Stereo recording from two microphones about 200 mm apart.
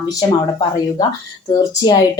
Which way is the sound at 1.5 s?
20° left (ahead or behind).